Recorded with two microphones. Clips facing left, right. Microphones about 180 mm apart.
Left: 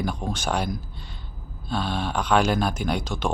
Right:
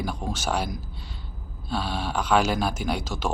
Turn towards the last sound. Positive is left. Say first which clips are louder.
# left 2 dB
turn(degrees=-5)  # may be behind; listen again after turning